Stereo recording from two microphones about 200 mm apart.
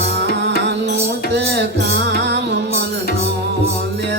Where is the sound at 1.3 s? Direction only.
60° right (ahead or behind).